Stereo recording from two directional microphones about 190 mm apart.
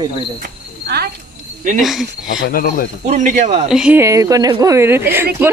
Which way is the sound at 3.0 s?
40° right (ahead or behind).